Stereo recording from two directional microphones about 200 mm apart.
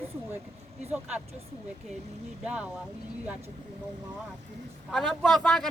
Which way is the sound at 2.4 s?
5° right (ahead or behind).